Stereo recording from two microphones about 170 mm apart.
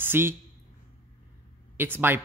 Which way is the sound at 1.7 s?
10° right (ahead or behind).